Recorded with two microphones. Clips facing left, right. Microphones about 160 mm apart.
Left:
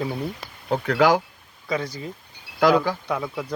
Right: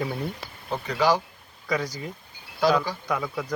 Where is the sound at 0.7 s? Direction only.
60° left (ahead or behind).